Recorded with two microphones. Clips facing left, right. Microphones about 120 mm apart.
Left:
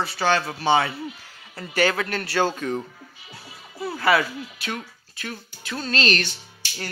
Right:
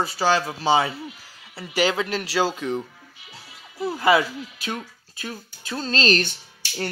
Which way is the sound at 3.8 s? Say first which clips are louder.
Right 2 dB; 20° right (ahead or behind).